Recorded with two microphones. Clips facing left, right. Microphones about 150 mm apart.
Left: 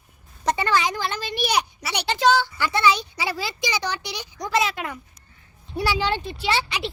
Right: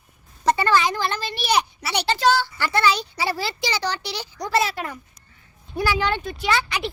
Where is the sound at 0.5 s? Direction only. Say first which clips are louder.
Right 2 dB; 15° left (ahead or behind).